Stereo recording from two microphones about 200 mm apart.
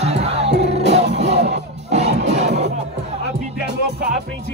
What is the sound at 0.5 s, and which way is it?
Music, 60° right (ahead or behind).